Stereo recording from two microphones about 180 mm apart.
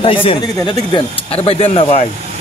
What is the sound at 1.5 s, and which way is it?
Speech, 35° left (ahead or behind).